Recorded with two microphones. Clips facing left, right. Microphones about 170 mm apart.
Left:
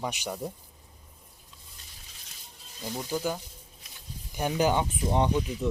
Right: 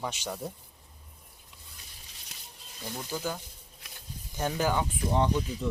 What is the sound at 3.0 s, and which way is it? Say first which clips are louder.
Speech: left 4 dB; 15° left (ahead or behind).